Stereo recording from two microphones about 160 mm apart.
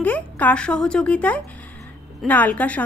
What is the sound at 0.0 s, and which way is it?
A woman's voice, 10° left (ahead or behind).